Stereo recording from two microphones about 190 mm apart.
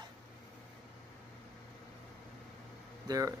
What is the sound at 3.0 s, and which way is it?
Speech, 20° right (ahead or behind).